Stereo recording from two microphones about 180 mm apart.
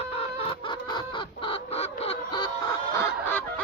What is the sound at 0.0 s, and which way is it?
Chicken, 30° left (ahead or behind).